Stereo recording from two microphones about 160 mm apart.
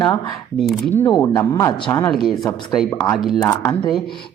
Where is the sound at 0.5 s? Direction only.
Centre (ahead or behind).